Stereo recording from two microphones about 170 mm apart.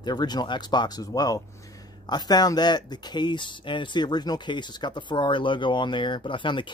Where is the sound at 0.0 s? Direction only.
25° left (ahead or behind).